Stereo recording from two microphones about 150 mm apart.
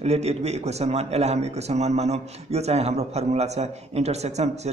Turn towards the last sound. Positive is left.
turn(degrees=-45)  # may be behind; listen again after turning